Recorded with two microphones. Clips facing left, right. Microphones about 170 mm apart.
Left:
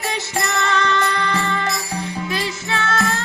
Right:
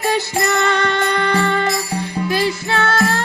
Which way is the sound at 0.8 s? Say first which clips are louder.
Right 2 dB; 30° right (ahead or behind).